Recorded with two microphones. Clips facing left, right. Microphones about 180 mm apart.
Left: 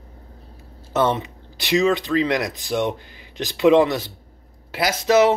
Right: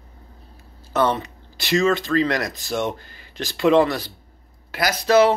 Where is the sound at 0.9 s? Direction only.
20° left (ahead or behind).